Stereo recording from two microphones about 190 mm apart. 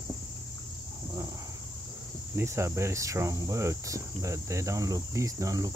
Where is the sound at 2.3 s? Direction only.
15° right (ahead or behind).